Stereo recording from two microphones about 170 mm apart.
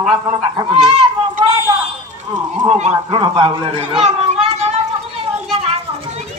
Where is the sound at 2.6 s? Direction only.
40° right (ahead or behind).